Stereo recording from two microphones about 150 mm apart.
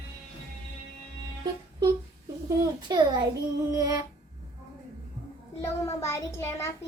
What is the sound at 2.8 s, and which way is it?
A child's voice, 30° right (ahead or behind).